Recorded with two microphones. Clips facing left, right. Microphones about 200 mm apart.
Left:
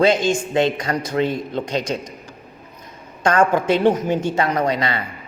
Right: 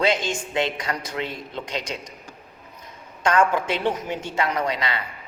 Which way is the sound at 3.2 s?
40° left (ahead or behind).